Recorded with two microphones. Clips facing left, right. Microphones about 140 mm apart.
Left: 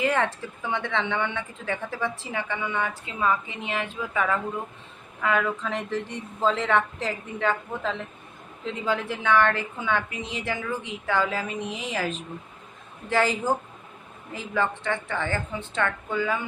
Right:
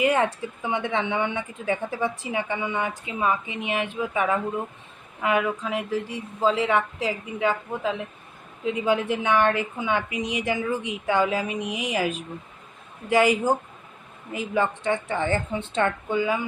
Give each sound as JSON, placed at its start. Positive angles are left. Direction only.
{"t": 0.0, "sound": "a woman's voice", "side_deg": -15}